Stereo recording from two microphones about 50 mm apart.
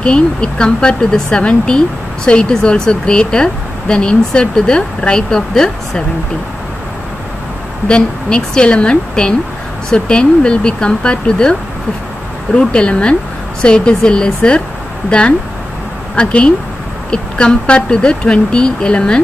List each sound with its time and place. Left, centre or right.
0.0 s speech: centre
7.9 s speech: centre
12.5 s speech: centre